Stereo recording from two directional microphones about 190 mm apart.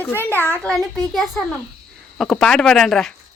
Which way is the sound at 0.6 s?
Centre (ahead or behind).